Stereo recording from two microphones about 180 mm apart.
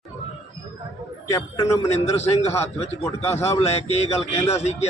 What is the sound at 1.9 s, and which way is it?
Speech, 35° left (ahead or behind).